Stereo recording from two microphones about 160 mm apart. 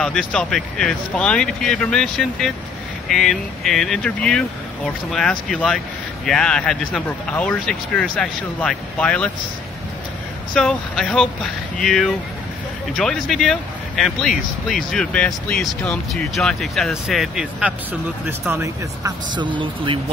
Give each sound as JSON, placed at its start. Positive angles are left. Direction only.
{"t": 0.0, "sound": "speech", "side_deg": 5}
{"t": 10.5, "sound": "speech", "side_deg": 5}
{"t": 19.3, "sound": "speech", "side_deg": -30}